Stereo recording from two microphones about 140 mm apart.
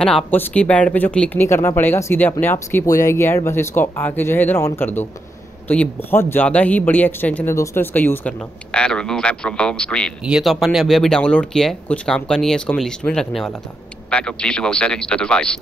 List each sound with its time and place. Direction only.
0.0 s speech: 10° left (ahead or behind)